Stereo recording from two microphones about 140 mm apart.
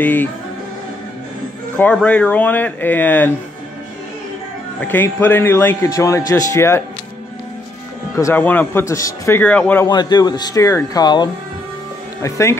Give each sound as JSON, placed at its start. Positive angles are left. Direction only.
{"t": 0.0, "sound": "a man's voice", "side_deg": 15}
{"t": 1.8, "sound": "a man's voice", "side_deg": 10}
{"t": 4.7, "sound": "a man's voice", "side_deg": 15}
{"t": 8.2, "sound": "a man's voice", "side_deg": 15}
{"t": 8.8, "sound": "speech", "side_deg": 25}
{"t": 9.4, "sound": "a man's voice", "side_deg": 10}
{"t": 9.8, "sound": "speech", "side_deg": 30}